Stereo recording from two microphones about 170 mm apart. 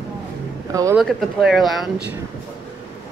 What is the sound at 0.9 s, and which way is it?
Speech, centre (ahead or behind).